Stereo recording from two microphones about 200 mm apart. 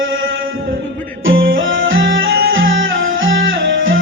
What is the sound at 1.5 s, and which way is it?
Music, 75° right (ahead or behind).